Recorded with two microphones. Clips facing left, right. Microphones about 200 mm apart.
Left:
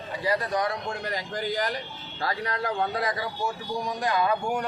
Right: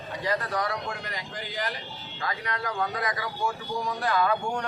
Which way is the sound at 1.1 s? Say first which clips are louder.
Left 7 dB; 40° left (ahead or behind).